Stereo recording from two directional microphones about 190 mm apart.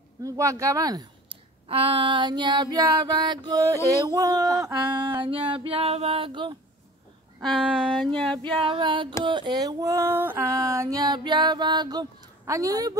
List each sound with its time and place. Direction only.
0.2 s a woman's voice: 15° right (ahead or behind)
7.4 s female singing: centre (ahead or behind)
8.6 s a woman's voice: 25° right (ahead or behind)